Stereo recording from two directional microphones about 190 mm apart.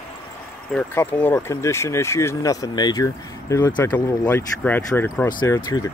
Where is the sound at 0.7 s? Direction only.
10° left (ahead or behind).